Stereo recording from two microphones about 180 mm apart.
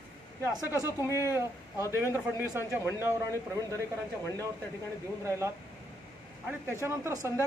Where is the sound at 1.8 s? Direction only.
15° left (ahead or behind).